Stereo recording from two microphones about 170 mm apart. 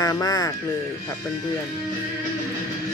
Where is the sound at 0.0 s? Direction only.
20° left (ahead or behind).